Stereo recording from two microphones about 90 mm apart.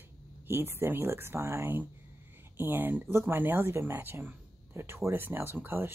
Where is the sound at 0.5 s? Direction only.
25° right (ahead or behind).